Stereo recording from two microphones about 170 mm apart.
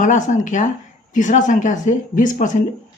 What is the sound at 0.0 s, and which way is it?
Speech, 45° left (ahead or behind).